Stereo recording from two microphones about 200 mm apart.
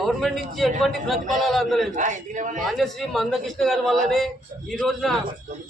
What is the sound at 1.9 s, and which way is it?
Speech, 40° right (ahead or behind).